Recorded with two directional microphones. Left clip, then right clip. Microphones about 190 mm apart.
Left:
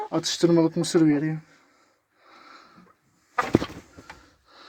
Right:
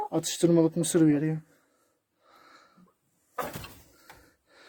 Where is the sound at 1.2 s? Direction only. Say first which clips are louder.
Left 2 dB; 30° right (ahead or behind).